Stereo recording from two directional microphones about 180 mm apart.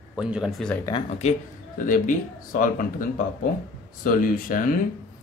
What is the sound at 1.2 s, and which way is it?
Speech, 45° left (ahead or behind).